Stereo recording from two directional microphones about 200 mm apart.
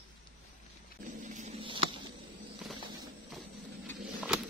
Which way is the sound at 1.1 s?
40° right (ahead or behind).